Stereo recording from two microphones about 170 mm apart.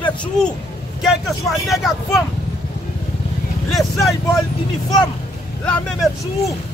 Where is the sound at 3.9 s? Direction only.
20° left (ahead or behind).